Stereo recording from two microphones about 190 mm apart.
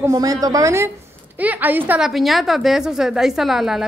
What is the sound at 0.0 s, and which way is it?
A woman's voice, 20° right (ahead or behind).